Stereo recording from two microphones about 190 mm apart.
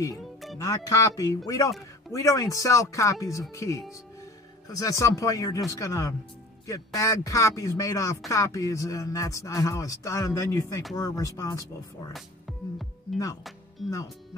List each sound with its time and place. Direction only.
0.2 s music: centre (ahead or behind)
0.6 s speech: 20° left (ahead or behind)
12.1 s music: centre (ahead or behind)